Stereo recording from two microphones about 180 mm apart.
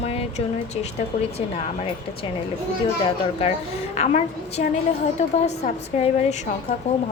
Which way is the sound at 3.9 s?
40° left (ahead or behind).